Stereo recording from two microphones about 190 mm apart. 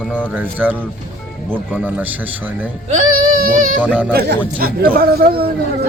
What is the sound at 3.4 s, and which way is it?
Speech, 45° right (ahead or behind).